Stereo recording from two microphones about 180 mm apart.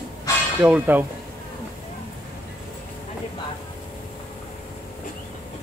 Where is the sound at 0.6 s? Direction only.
10° right (ahead or behind).